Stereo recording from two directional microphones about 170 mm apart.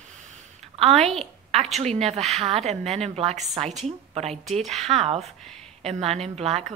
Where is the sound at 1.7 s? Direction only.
40° right (ahead or behind).